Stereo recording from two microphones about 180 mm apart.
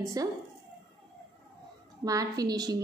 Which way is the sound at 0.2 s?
20° right (ahead or behind).